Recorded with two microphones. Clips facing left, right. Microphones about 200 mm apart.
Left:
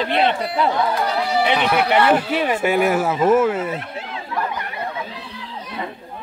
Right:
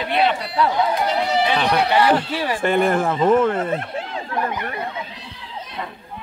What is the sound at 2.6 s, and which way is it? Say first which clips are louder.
Speech: right 2 dB; 5° left (ahead or behind).